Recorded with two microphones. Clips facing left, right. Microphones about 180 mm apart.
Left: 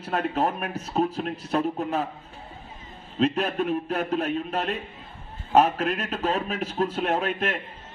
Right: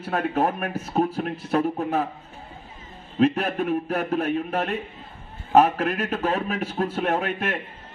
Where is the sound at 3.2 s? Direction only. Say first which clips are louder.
Right 2 dB; 50° right (ahead or behind).